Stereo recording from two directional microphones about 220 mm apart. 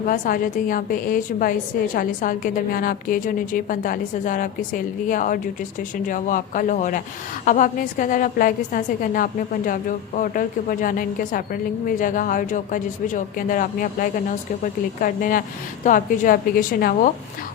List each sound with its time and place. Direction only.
0.1 s a woman's voice: 40° left (ahead or behind)